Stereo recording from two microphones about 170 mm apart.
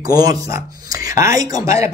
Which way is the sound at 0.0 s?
20° right (ahead or behind).